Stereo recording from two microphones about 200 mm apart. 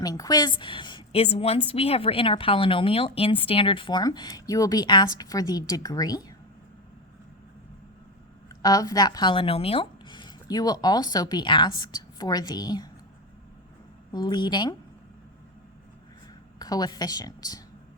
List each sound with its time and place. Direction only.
0.0 s a woman's voice: 20° left (ahead or behind)
8.4 s a woman's voice: 20° left (ahead or behind)
14.1 s a woman's voice: 20° left (ahead or behind)
16.6 s speech: 20° left (ahead or behind)